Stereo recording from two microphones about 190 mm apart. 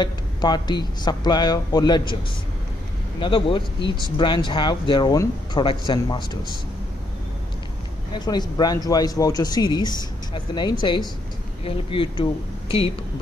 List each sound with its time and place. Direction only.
0.0 s speech: 20° left (ahead or behind)
3.2 s speech: 25° left (ahead or behind)
8.1 s speech: 20° left (ahead or behind)